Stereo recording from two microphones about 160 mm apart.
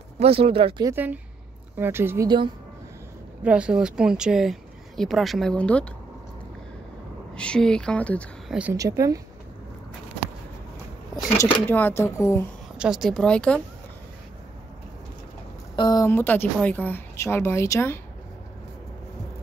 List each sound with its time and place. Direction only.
0.2 s speech: 35° right (ahead or behind)
0.8 s a woman's voice: 10° right (ahead or behind)
2.2 s speech: 30° right (ahead or behind)
3.4 s speech: 5° right (ahead or behind)
7.3 s speech: 5° left (ahead or behind)
8.5 s speech: 10° right (ahead or behind)
8.7 s speech: 20° right (ahead or behind)
11.6 s speech: 10° left (ahead or behind)
12.7 s speech: 5° right (ahead or behind)
15.7 s speech: 25° left (ahead or behind)
16.1 s speech: 15° left (ahead or behind)